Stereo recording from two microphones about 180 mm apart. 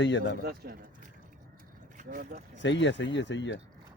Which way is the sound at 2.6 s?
90° left.